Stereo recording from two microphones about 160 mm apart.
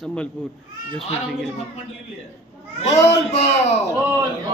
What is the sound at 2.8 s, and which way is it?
Speech, 45° left (ahead or behind).